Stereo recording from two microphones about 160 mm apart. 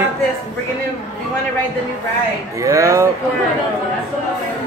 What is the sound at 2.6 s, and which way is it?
Speech, 20° right (ahead or behind).